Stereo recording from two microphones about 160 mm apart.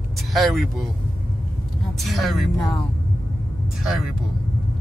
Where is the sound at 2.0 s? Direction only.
Centre (ahead or behind).